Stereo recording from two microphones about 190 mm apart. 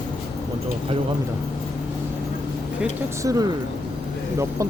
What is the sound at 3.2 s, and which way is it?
Speech, 20° right (ahead or behind).